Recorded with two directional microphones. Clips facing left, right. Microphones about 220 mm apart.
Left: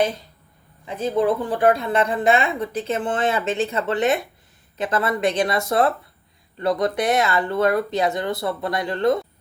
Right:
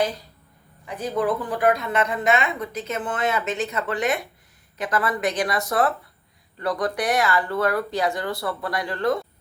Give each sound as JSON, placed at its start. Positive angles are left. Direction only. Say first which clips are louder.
{"t": 0.9, "sound": "a woman's voice", "louder": "left 4 dB", "side_deg": 25}